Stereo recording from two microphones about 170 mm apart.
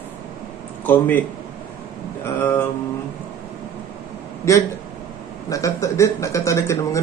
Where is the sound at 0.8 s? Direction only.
10° left (ahead or behind).